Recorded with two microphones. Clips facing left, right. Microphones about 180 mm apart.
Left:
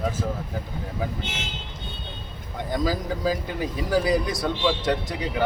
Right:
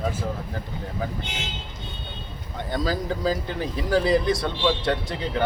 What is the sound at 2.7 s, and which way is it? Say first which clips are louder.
Speech: even; 5° left (ahead or behind).